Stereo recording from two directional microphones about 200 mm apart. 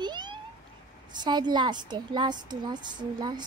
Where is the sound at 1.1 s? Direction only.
20° right (ahead or behind).